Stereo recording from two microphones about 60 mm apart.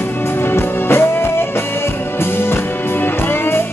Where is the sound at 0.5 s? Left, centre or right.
Left.